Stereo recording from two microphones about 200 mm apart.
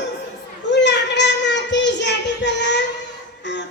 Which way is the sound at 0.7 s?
60° left (ahead or behind).